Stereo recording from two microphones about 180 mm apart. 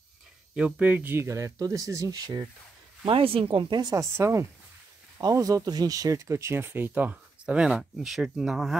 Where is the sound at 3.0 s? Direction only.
30° right (ahead or behind); by 8.8 s centre (ahead or behind).